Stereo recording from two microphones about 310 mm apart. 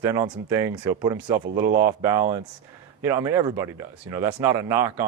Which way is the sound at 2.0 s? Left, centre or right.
Centre.